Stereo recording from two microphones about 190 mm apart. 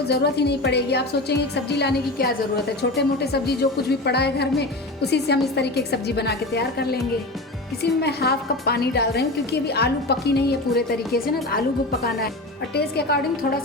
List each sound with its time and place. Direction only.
0.1 s a woman's voice: 60° left (ahead or behind)
12.7 s a woman's voice: 60° left (ahead or behind)